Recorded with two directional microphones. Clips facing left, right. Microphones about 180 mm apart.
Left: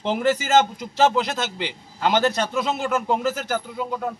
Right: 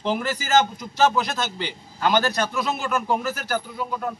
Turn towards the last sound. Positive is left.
turn(degrees=20)  # may be behind; listen again after turning